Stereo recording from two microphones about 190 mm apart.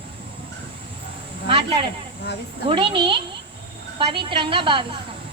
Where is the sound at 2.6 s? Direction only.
25° right (ahead or behind).